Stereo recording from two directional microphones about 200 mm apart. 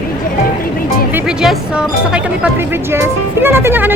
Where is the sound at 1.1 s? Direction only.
5° right (ahead or behind).